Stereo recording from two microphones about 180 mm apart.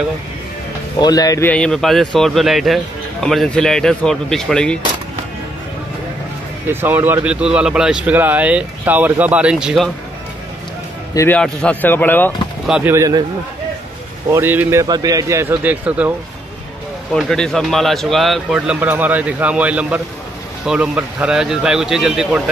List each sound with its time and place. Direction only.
0.9 s speech: 20° left (ahead or behind)
1.5 s speech: 5° left (ahead or behind)
6.7 s speech: 10° right (ahead or behind)
11.1 s speech: 10° left (ahead or behind)
12.6 s speech: 5° right (ahead or behind)
12.9 s a man's voice: 20° right (ahead or behind)
14.3 s speech: 10° right (ahead or behind)
17.1 s speech: centre (ahead or behind)